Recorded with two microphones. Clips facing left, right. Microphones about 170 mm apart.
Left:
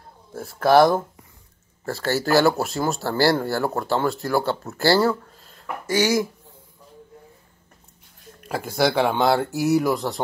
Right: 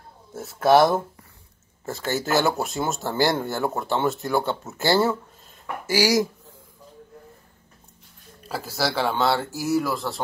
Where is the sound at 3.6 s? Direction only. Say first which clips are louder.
Left 1 dB; centre (ahead or behind).